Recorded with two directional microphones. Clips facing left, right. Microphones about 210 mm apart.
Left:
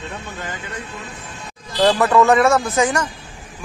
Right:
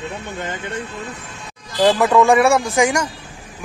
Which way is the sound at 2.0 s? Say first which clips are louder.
Right 1 dB; 15° right (ahead or behind).